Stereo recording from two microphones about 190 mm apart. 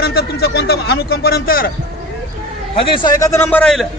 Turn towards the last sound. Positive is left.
turn(degrees=5)  # may be behind; listen again after turning